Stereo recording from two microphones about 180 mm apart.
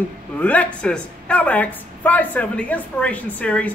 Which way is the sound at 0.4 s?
10° left (ahead or behind).